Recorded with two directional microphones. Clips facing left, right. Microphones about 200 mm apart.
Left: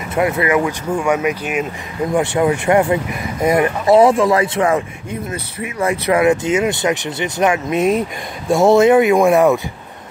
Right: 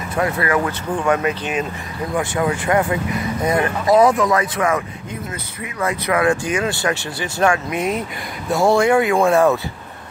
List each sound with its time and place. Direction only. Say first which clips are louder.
0.1 s speech: left 4 dB; 20° left (ahead or behind)
2.1 s speech: left 5 dB; 25° left (ahead or behind)